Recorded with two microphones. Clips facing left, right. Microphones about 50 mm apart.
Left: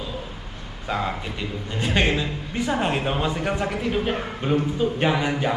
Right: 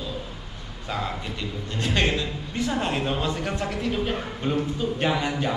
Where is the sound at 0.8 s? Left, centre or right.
Centre.